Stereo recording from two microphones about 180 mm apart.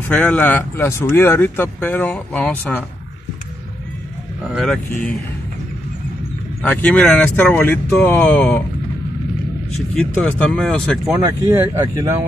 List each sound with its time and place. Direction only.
0.1 s speech: 5° left (ahead or behind)
6.6 s speech: 10° left (ahead or behind)
9.8 s speech: 5° left (ahead or behind)
11.1 s speech: 15° right (ahead or behind)